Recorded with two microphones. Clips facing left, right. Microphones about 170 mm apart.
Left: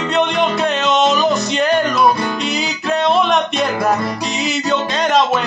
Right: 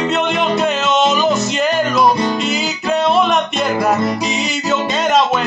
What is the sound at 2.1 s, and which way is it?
Music, 20° right (ahead or behind).